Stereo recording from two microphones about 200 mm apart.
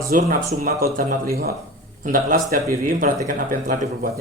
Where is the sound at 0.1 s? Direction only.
45° right (ahead or behind).